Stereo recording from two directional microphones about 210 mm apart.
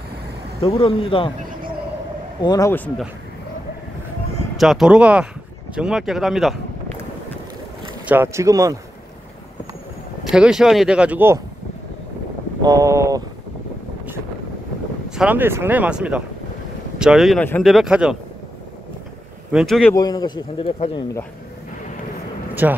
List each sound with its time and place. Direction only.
0.6 s a man's voice: 25° left (ahead or behind)
2.4 s speech: 15° left (ahead or behind)
4.6 s speech: centre (ahead or behind)
8.0 s speech: 10° right (ahead or behind)
10.3 s speech: 5° right (ahead or behind)
12.6 s speech: 15° right (ahead or behind)
15.0 s speech: 5° right (ahead or behind)
19.5 s speech: centre (ahead or behind)
19.9 s a man's voice: 20° left (ahead or behind)
22.5 s vehicle: 10° right (ahead or behind)